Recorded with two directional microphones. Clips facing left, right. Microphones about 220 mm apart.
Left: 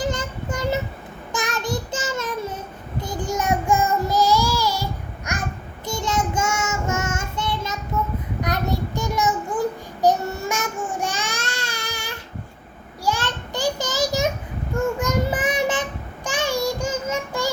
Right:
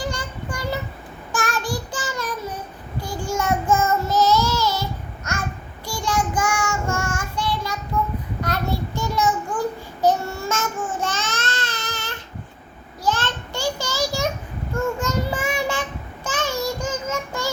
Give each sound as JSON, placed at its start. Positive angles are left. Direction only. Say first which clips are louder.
{"t": 0.0, "sound": "child singing", "louder": "left 3 dB", "side_deg": 20}
{"t": 10.9, "sound": "a sound", "louder": "even", "side_deg": 15}
{"t": 14.7, "sound": "child singing", "louder": "left 1 dB", "side_deg": 15}